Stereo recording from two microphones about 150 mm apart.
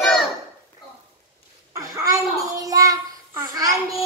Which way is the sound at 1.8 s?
20° right (ahead or behind).